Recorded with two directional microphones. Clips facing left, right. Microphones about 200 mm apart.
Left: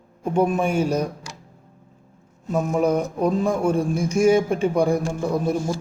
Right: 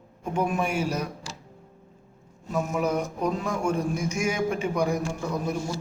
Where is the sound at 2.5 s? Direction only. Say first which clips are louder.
Left 6 dB; 35° left (ahead or behind).